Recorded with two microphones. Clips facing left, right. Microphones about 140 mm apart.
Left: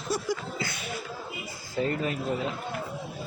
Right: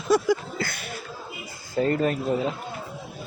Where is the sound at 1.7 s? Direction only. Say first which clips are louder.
Right 6 dB; 45° right (ahead or behind).